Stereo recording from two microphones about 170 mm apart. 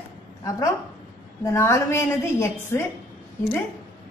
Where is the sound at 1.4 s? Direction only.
15° left (ahead or behind).